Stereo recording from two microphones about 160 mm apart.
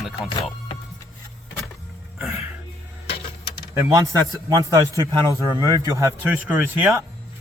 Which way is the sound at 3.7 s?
20° right (ahead or behind).